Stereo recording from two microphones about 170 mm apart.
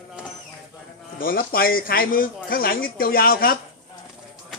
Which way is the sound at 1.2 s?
60° left (ahead or behind).